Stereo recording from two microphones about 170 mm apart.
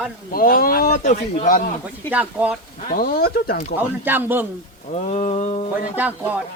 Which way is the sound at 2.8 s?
60° left (ahead or behind).